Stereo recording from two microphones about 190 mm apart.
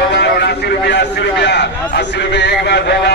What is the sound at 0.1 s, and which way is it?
A man's voice, 60° left (ahead or behind).